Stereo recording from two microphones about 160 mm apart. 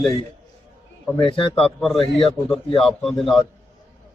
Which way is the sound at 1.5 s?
5° left (ahead or behind).